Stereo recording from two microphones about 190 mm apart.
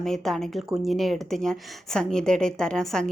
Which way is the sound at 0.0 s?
Centre (ahead or behind).